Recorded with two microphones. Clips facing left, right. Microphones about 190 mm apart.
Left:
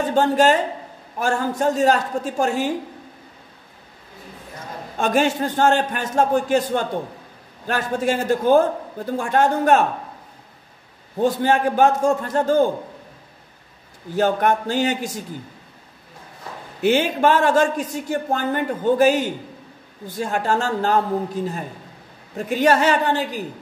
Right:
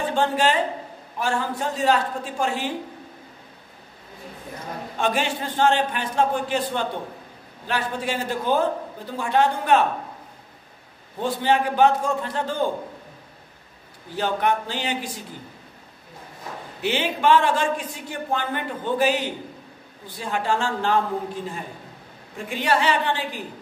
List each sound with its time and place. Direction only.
0.0 s speech: 45° left (ahead or behind)
4.9 s speech: 45° left (ahead or behind)
11.1 s speech: 45° left (ahead or behind)
14.1 s speech: 45° left (ahead or behind)
16.8 s a man's voice: 45° left (ahead or behind)